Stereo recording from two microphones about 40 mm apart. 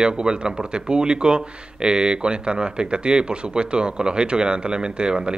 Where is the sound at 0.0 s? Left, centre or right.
Right.